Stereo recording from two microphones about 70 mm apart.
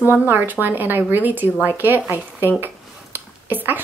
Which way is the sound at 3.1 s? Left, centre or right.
Right.